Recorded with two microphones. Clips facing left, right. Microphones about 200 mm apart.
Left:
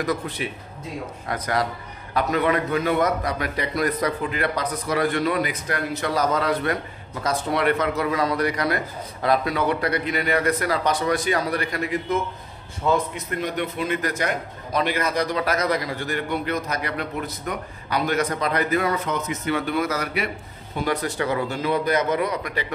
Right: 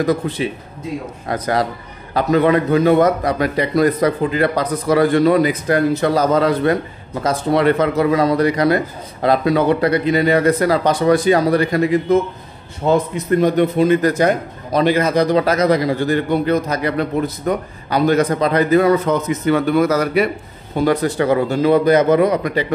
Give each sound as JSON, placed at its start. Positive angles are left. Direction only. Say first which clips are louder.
{"t": 0.0, "sound": "a man's voice", "louder": "right 8 dB", "side_deg": -30}